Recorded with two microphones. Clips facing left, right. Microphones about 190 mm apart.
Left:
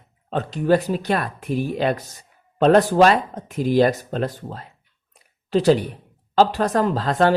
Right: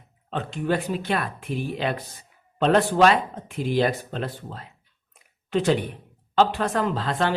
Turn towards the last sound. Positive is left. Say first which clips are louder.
# left 6 dB
turn(degrees=40)  # may be behind; listen again after turning